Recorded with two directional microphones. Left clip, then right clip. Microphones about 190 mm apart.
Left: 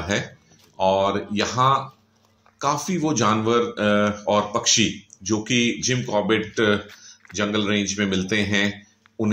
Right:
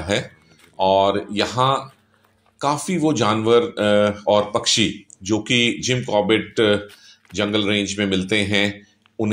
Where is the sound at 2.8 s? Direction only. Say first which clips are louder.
Right 2 dB; 15° right (ahead or behind).